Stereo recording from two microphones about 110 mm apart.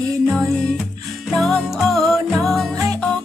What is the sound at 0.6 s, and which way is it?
Music, 5° left (ahead or behind).